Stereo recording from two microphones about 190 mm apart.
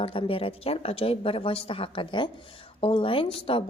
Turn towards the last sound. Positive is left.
turn(degrees=30)  # may be behind; listen again after turning